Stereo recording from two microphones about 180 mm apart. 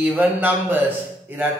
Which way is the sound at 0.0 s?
10° right (ahead or behind).